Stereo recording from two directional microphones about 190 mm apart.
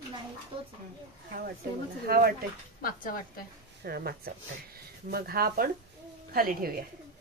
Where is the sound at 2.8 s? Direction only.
50° left (ahead or behind).